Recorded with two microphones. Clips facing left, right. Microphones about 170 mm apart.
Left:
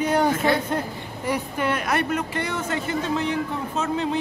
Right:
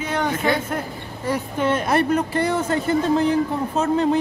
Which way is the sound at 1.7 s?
30° right (ahead or behind).